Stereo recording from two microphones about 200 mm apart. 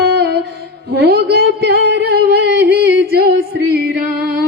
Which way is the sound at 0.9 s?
55° right (ahead or behind).